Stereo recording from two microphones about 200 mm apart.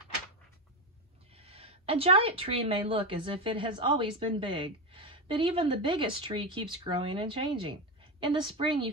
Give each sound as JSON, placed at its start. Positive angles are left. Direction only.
{"t": 1.3, "sound": "a woman's voice", "side_deg": -30}